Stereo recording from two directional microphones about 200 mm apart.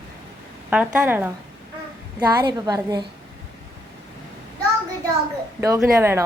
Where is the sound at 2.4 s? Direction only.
20° right (ahead or behind).